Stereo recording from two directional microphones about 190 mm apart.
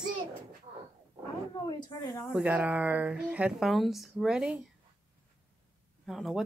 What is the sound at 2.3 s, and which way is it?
Speech, 5° right (ahead or behind).